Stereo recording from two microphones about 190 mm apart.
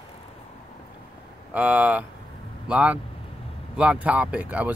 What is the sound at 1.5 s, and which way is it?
Speech, 10° right (ahead or behind).